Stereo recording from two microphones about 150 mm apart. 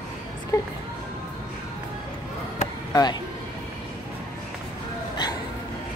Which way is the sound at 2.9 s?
25° left (ahead or behind).